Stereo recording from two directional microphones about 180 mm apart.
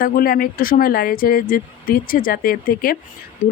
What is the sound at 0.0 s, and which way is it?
A woman's voice, 55° left (ahead or behind).